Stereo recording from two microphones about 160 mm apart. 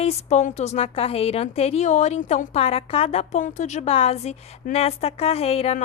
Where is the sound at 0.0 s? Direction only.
40° left (ahead or behind).